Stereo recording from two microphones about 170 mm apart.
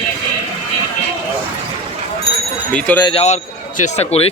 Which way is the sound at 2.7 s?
5° left (ahead or behind).